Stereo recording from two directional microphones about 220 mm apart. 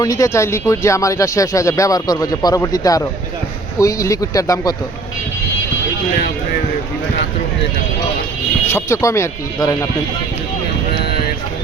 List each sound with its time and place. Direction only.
0.0 s speech: 15° left (ahead or behind)
8.7 s speech: 15° left (ahead or behind)